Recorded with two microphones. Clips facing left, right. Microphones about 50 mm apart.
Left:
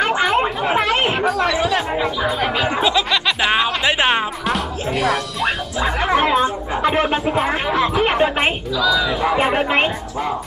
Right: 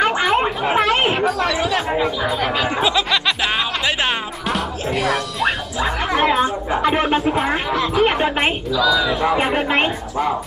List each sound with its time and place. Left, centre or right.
0.0 s chatter: centre
4.5 s music: centre